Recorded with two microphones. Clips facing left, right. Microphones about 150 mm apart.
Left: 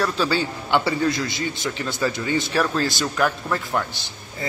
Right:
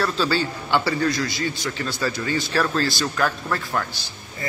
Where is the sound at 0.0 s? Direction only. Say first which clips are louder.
Even; 15° left (ahead or behind).